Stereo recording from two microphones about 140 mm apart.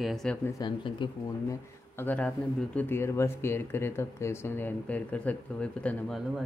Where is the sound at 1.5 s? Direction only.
15° left (ahead or behind).